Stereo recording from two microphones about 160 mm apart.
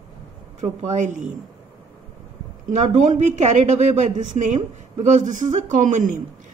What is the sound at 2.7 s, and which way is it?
Speech, 50° right (ahead or behind).